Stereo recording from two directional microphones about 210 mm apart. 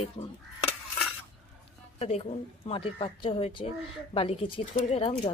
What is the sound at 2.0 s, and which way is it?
Speech, 30° left (ahead or behind).